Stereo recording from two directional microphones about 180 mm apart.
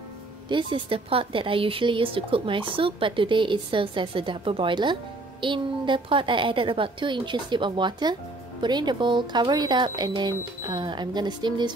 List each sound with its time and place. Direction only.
0.5 s a woman's voice: 25° right (ahead or behind)